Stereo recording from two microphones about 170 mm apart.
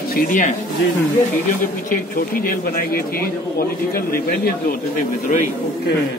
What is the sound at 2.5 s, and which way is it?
Speech, 60° left (ahead or behind).